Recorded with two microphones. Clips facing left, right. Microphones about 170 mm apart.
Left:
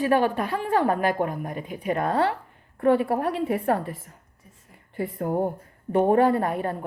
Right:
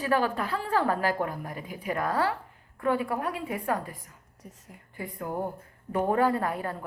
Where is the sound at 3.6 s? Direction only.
30° left (ahead or behind).